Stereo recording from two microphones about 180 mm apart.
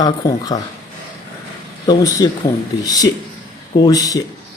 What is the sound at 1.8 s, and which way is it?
Speech, 20° left (ahead or behind).